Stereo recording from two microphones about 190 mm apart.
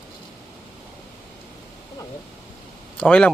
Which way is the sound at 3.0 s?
5° left (ahead or behind).